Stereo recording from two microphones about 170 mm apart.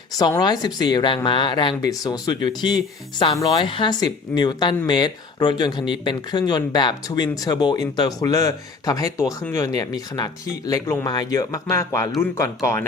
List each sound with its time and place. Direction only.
0.2 s speech: 25° left (ahead or behind)